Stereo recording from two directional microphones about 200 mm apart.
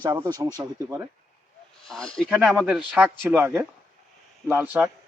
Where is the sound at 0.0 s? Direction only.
20° right (ahead or behind).